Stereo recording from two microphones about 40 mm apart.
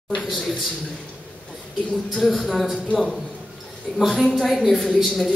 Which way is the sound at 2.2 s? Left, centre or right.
Centre.